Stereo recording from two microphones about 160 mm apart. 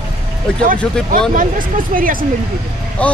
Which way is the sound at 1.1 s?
60° right (ahead or behind).